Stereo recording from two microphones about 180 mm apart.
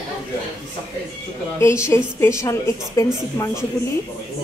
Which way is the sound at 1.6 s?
15° left (ahead or behind).